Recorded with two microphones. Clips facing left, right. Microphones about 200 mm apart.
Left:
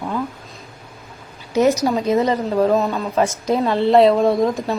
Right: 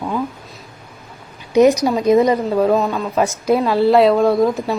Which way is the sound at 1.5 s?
15° right (ahead or behind).